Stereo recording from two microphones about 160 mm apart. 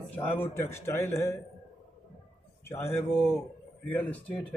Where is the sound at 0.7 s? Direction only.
15° left (ahead or behind).